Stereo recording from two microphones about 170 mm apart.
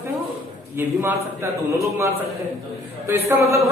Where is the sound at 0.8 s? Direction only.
15° right (ahead or behind).